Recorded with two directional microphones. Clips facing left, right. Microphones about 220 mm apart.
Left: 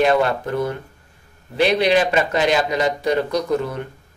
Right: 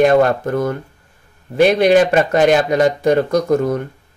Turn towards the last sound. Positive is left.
turn(degrees=-45)  # may be behind; listen again after turning